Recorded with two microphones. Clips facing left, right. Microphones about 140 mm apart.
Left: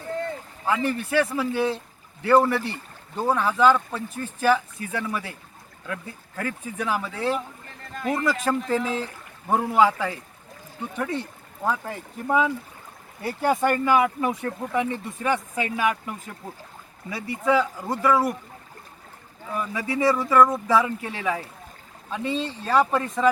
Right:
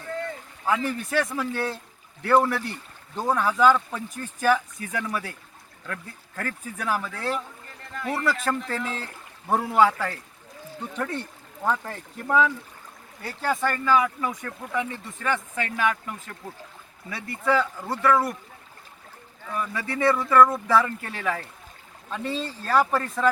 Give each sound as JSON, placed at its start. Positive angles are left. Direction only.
{"t": 0.6, "sound": "a man's voice", "side_deg": 10}
{"t": 7.9, "sound": "speech", "side_deg": 20}
{"t": 19.5, "sound": "speech", "side_deg": 10}
{"t": 22.4, "sound": "speech", "side_deg": 0}